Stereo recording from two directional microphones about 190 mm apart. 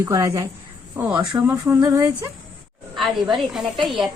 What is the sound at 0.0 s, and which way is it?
Speech, 15° right (ahead or behind).